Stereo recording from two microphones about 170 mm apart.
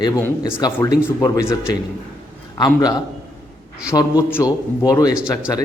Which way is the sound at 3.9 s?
25° left (ahead or behind).